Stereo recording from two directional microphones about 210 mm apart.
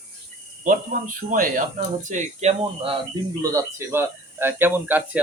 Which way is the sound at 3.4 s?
15° right (ahead or behind).